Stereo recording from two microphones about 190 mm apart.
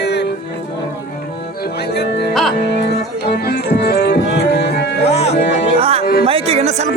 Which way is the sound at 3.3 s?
60° left (ahead or behind).